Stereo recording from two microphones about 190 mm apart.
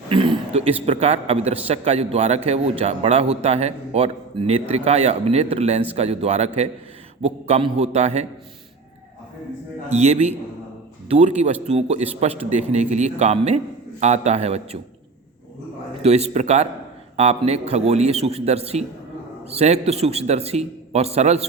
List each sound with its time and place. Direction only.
0.1 s a man's voice: 30° right (ahead or behind)
9.9 s a man's voice: 35° right (ahead or behind)
16.0 s a man's voice: 35° right (ahead or behind)